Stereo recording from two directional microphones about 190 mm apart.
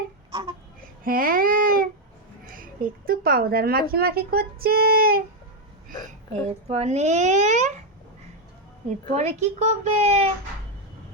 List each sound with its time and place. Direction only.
1.0 s a woman's voice: 50° right (ahead or behind)
8.9 s a woman's voice: 40° right (ahead or behind)